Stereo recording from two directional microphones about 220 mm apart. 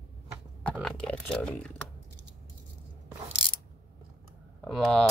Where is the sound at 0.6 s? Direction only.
5° left (ahead or behind).